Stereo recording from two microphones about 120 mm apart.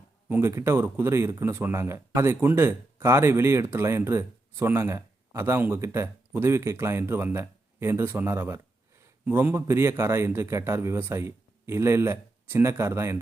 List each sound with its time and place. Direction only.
0.3 s speech: 20° right (ahead or behind)